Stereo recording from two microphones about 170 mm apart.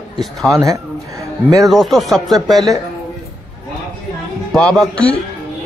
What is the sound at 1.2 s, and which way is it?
Music, 20° right (ahead or behind).